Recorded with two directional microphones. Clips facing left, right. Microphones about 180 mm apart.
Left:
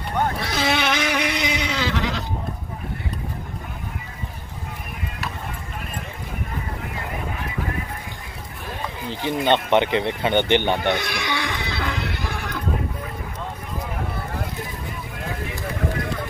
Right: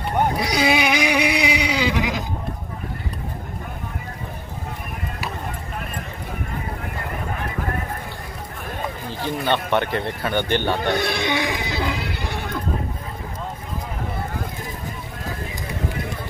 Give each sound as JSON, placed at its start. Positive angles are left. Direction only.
{"t": 0.2, "sound": "vehicle", "side_deg": -15}
{"t": 7.3, "sound": "clip-clop", "side_deg": -50}
{"t": 9.1, "sound": "speech", "side_deg": 20}
{"t": 11.0, "sound": "speech", "side_deg": -30}
{"t": 11.3, "sound": "music", "side_deg": -15}